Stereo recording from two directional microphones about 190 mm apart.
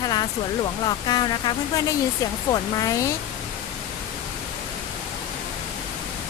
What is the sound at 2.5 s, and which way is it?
Speech, 20° left (ahead or behind).